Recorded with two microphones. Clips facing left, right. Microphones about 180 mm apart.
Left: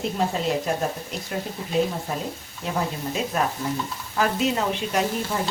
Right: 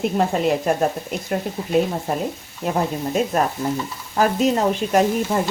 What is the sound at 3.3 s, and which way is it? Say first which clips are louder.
Speech: right 4 dB; 45° right (ahead or behind).